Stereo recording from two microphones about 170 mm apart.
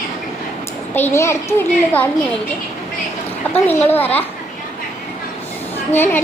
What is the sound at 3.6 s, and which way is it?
Speech, 10° left (ahead or behind).